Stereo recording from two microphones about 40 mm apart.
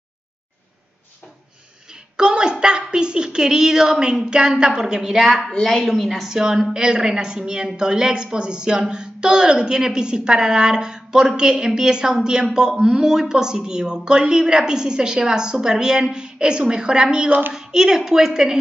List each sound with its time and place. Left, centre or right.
2.1 s a sound: right
4.3 s speech: right
5.6 s a woman's voice: centre
5.9 s a woman's voice: centre